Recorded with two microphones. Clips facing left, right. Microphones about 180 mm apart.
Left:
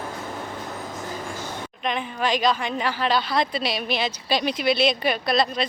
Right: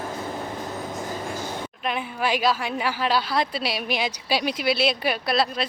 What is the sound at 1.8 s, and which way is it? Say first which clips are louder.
A woman's voice: left 1 dB; 5° right (ahead or behind).